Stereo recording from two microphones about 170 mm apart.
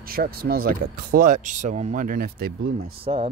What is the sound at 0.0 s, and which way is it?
Speech, 60° right (ahead or behind).